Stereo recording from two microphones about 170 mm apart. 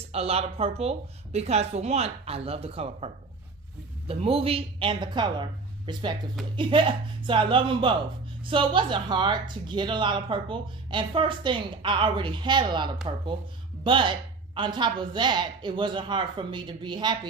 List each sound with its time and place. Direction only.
0.0 s a woman's voice: 35° right (ahead or behind)
4.1 s speech: 35° right (ahead or behind)